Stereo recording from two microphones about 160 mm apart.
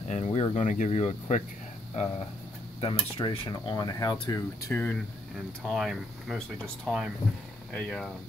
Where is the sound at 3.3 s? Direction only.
30° left (ahead or behind).